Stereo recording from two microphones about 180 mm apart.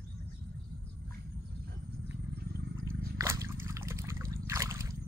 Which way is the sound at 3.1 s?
15° right (ahead or behind).